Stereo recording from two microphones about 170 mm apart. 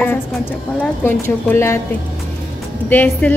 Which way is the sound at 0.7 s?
10° left (ahead or behind).